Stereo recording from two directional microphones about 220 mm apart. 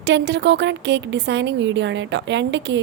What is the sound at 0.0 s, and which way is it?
A woman's voice, 50° right (ahead or behind).